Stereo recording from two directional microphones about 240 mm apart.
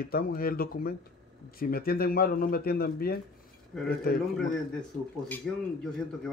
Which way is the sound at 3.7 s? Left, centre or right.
Centre.